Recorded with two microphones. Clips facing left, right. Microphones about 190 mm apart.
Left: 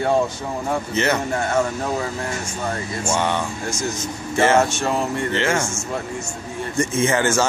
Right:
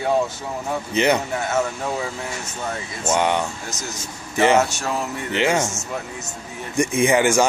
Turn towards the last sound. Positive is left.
turn(degrees=-15)  # may be behind; listen again after turning